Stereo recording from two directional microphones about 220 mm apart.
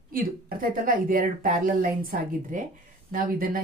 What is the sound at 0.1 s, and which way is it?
A woman's voice, 40° right (ahead or behind).